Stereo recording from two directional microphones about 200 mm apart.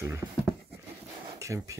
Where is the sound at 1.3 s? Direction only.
15° right (ahead or behind).